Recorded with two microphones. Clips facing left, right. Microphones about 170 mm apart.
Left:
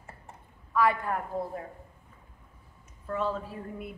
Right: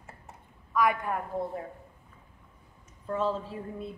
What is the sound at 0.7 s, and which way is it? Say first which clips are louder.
Speech: left 1 dB; 15° right (ahead or behind).